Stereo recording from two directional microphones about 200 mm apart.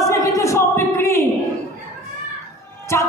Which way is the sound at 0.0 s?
15° left (ahead or behind).